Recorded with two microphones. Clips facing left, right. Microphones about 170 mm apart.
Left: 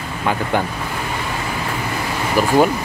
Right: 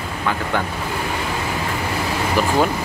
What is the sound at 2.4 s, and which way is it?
Speech, 10° left (ahead or behind).